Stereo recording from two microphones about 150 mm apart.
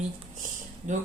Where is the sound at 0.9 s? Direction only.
55° right (ahead or behind).